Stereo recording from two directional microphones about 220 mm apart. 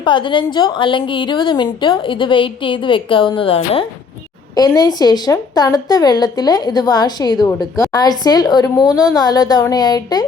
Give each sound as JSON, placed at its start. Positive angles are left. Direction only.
{"t": 0.0, "sound": "a woman's voice", "side_deg": 20}